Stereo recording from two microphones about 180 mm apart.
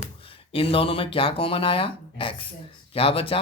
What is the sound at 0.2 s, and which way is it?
Speech, 30° left (ahead or behind).